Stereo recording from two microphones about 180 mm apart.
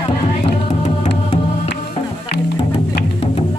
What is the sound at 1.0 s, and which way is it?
Music, 30° left (ahead or behind).